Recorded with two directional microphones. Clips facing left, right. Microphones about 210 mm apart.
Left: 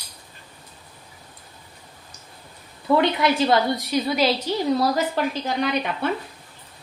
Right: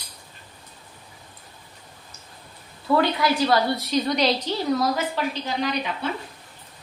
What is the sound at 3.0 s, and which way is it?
Speech, 25° left (ahead or behind).